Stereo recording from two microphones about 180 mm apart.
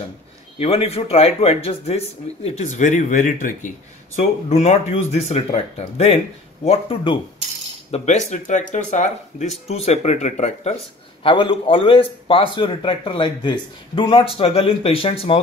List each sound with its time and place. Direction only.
0.6 s speech: 35° left (ahead or behind)
11.2 s a man's voice: 30° left (ahead or behind)